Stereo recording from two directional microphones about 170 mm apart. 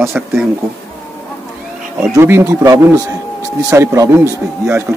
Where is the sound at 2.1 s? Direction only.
15° right (ahead or behind).